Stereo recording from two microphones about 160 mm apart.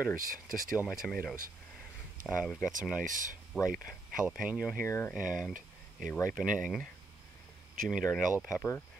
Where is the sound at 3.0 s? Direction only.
55° right (ahead or behind).